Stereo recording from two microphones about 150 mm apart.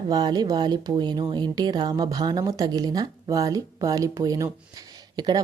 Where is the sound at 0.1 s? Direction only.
25° right (ahead or behind).